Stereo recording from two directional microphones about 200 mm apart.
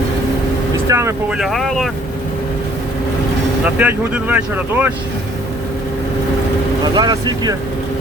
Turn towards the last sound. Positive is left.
turn(degrees=-20)  # may be behind; listen again after turning